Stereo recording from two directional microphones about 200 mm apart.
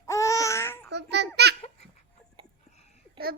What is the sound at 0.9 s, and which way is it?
Babbling, 60° right (ahead or behind).